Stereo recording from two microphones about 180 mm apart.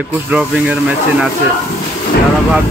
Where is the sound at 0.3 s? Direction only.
5° right (ahead or behind).